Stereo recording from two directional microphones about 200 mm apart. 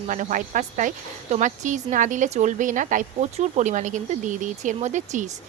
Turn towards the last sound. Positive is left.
turn(degrees=-40)  # may be behind; listen again after turning